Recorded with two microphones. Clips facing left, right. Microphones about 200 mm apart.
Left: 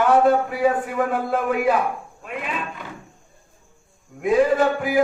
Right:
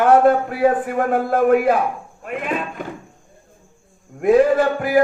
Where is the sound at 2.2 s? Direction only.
50° right (ahead or behind).